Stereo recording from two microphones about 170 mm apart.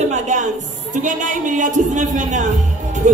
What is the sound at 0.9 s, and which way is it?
A man's voice, 50° right (ahead or behind).